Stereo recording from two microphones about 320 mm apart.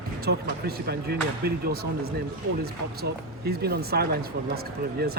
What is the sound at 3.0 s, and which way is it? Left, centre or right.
Speech, right.